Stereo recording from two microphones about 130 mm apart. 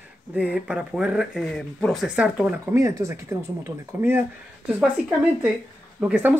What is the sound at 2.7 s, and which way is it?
Speech, 20° right (ahead or behind).